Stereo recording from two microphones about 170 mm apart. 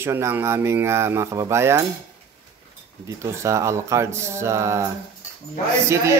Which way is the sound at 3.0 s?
20° right (ahead or behind).